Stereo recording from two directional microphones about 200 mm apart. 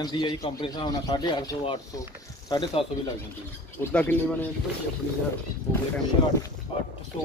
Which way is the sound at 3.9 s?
10° left (ahead or behind).